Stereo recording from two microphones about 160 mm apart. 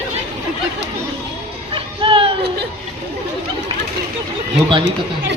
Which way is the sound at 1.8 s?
35° right (ahead or behind).